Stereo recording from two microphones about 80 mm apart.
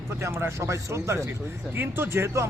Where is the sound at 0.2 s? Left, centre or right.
Right.